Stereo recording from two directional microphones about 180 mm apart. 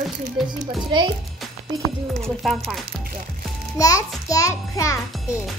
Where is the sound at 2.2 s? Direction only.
Centre (ahead or behind).